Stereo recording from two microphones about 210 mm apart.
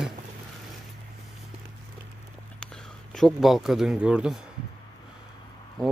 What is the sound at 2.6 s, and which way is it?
A man's voice, 5° left (ahead or behind).